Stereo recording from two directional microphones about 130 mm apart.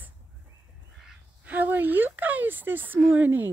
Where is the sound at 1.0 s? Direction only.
10° right (ahead or behind).